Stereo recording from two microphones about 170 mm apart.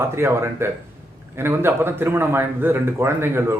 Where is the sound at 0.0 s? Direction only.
15° right (ahead or behind).